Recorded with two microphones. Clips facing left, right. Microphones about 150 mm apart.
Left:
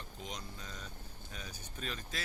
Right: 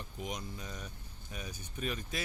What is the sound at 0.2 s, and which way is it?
Vehicle, 15° right (ahead or behind).